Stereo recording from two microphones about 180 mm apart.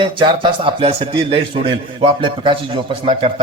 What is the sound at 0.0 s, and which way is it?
A man's voice, 30° right (ahead or behind).